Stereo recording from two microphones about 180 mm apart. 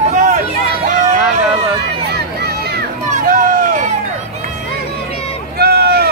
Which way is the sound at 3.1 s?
50° right (ahead or behind).